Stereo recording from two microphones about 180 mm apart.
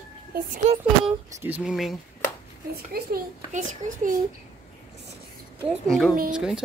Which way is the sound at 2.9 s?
55° right (ahead or behind).